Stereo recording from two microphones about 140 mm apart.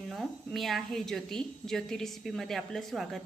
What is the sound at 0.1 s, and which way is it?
A woman's voice, centre (ahead or behind).